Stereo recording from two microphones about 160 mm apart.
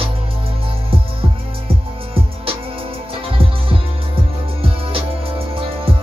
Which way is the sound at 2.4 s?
35° right (ahead or behind).